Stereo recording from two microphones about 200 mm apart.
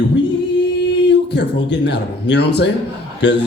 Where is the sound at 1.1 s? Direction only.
60° left (ahead or behind).